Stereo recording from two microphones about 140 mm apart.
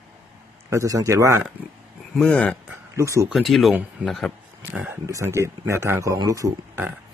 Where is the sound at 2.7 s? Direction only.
20° right (ahead or behind).